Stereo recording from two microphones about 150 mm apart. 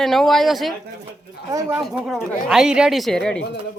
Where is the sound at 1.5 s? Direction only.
25° right (ahead or behind).